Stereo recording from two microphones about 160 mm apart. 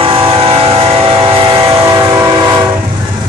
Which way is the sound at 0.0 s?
35° right (ahead or behind).